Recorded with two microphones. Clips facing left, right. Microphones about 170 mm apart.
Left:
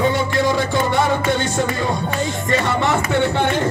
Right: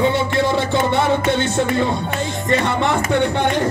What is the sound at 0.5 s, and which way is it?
Music, 25° right (ahead or behind).